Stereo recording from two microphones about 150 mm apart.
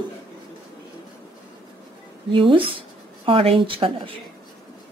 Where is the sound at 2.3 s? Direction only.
35° right (ahead or behind).